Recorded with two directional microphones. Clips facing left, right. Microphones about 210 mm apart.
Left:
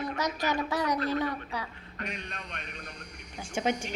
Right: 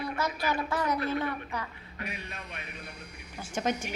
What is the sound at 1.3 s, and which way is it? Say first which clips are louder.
Speech: even; 10° left (ahead or behind).